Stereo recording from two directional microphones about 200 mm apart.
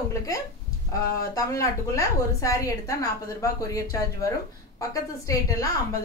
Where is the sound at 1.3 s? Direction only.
15° left (ahead or behind).